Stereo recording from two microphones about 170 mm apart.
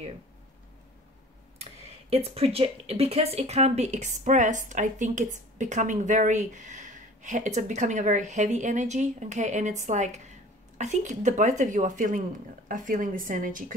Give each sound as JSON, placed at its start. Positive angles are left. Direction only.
{"t": 1.6, "sound": "speech", "side_deg": -35}